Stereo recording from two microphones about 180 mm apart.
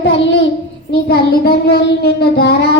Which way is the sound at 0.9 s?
60° left (ahead or behind).